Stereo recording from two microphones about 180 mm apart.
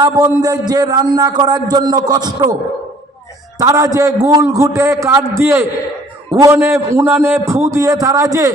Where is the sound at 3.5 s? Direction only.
20° right (ahead or behind).